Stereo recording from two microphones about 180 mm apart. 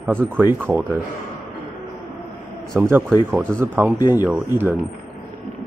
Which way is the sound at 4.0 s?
20° left (ahead or behind).